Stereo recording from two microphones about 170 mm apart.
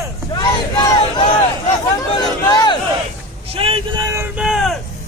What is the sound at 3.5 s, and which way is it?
Vehicle, 35° right (ahead or behind).